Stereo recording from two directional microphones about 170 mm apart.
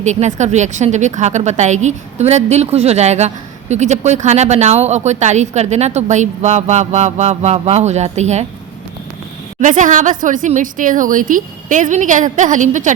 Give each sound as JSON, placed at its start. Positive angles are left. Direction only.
{"t": 0.0, "sound": "a woman's voice", "side_deg": -45}
{"t": 9.6, "sound": "a woman's voice", "side_deg": -45}